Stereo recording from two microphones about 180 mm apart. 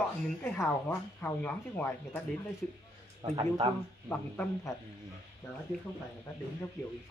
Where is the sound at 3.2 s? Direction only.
25° right (ahead or behind).